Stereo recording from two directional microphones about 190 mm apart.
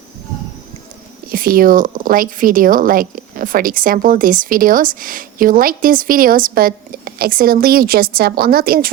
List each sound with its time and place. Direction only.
1.3 s speech: 50° right (ahead or behind)